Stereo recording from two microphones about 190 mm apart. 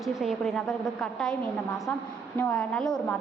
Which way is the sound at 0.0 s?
Centre (ahead or behind).